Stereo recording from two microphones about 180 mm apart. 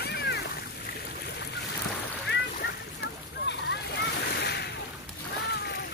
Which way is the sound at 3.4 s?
75° left (ahead or behind).